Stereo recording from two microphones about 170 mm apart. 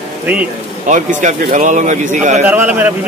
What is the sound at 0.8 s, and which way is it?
Speech, 45° right (ahead or behind).